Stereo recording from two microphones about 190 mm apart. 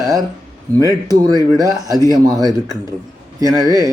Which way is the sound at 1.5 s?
20° right (ahead or behind).